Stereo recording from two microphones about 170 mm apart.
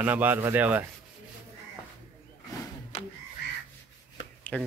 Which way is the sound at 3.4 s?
80° left.